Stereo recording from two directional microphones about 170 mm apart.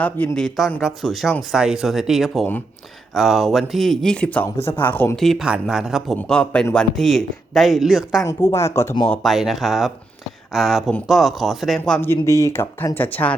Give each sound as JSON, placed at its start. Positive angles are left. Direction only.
{"t": 0.0, "sound": "speech", "side_deg": 10}
{"t": 8.2, "sound": "speech", "side_deg": 20}
{"t": 9.0, "sound": "speech", "side_deg": 0}
{"t": 12.2, "sound": "speech", "side_deg": 20}